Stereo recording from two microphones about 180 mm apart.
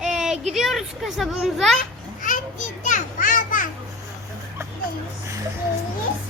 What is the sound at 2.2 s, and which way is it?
Children playing, 45° left (ahead or behind).